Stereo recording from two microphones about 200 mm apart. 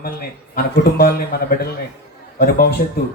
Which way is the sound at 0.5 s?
55° left (ahead or behind).